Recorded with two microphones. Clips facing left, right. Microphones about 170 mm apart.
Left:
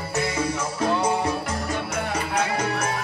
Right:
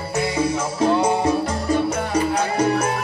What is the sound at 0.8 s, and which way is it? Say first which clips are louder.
Music: right 5 dB; 25° right (ahead or behind).